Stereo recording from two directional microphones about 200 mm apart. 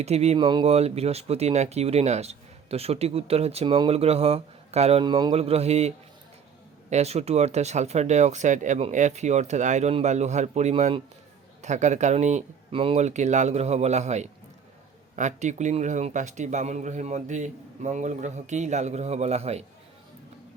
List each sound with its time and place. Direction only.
0.0 s speech: 30° right (ahead or behind)
6.9 s speech: 30° right (ahead or behind)